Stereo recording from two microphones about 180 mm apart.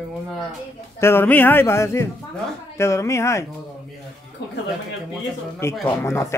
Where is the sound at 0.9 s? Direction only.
15° left (ahead or behind).